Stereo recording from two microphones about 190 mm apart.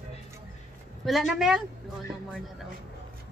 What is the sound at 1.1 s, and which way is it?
Speech, centre (ahead or behind).